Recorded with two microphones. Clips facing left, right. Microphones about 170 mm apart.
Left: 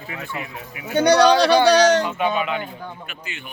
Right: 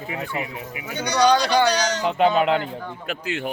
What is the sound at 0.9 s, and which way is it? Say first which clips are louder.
Speech: left 5 dB; 60° left (ahead or behind).